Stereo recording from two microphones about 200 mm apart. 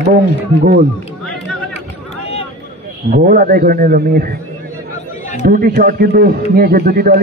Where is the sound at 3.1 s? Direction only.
45° right (ahead or behind).